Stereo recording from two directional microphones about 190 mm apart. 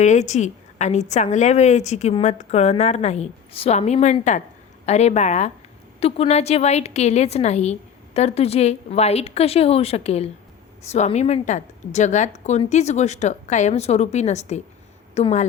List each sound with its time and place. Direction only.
0.0 s a woman's voice: 40° left (ahead or behind)